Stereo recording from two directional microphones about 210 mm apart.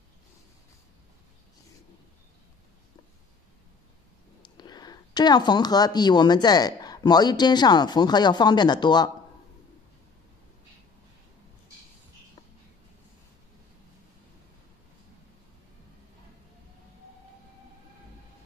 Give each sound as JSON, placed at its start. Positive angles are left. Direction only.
{"t": 4.4, "sound": "speech", "side_deg": 20}